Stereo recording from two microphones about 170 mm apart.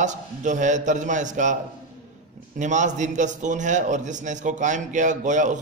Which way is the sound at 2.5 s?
45° right (ahead or behind).